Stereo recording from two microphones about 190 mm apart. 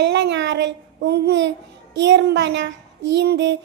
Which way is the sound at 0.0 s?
65° right (ahead or behind).